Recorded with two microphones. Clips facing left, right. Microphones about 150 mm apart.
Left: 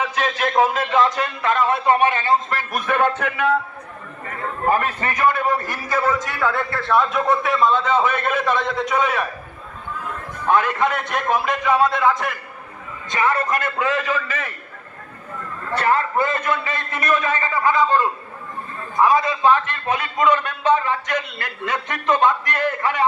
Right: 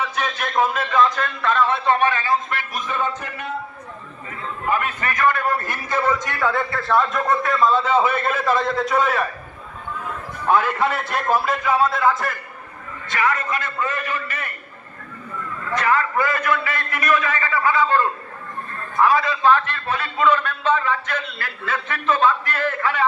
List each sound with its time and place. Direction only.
1.1 s a man's voice: 10° left (ahead or behind); by 2.6 s 30° left (ahead or behind)
2.6 s music: 60° left (ahead or behind); by 3.6 s 75° left (ahead or behind)
4.3 s a sound: 60° left (ahead or behind)
4.6 s a man's voice: 40° left (ahead or behind)
5.1 s a man's voice: 15° left (ahead or behind); by 9.2 s centre (ahead or behind)
10.4 s a man's voice: 5° right (ahead or behind)
13.1 s a man's voice: 25° left (ahead or behind)
13.5 s a man's voice: 55° left (ahead or behind)
13.7 s a man's voice: 90° left
15.7 s a man's voice: 30° left (ahead or behind); by 23.0 s 15° left (ahead or behind)